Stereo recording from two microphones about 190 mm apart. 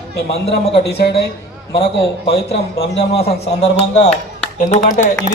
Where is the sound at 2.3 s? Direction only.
60° left (ahead or behind).